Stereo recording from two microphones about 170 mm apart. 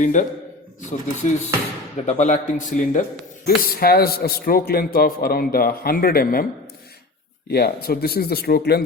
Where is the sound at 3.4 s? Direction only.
65° left (ahead or behind).